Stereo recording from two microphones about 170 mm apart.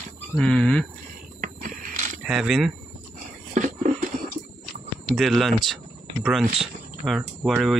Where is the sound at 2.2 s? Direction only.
5° right (ahead or behind).